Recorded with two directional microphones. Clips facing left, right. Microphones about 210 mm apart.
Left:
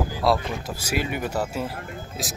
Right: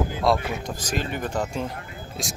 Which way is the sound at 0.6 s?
10° left (ahead or behind).